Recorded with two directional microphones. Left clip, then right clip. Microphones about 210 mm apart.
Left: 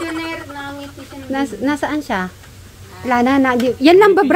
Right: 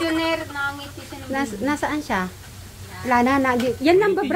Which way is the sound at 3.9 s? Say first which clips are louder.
Left 9 dB; 50° left (ahead or behind).